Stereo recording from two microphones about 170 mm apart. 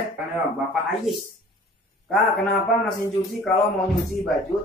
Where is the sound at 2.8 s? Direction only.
5° left (ahead or behind).